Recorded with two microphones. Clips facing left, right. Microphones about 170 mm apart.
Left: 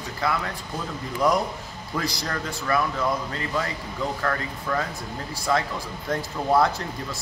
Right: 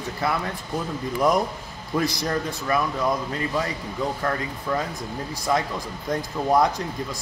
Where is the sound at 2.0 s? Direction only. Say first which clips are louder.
Right 5 dB; 20° right (ahead or behind).